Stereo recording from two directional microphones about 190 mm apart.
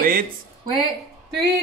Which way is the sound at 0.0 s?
50° right (ahead or behind).